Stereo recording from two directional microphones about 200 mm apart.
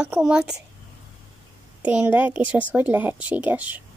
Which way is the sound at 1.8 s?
5° right (ahead or behind).